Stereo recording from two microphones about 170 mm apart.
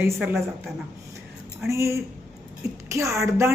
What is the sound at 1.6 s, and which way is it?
A woman's voice, 15° right (ahead or behind).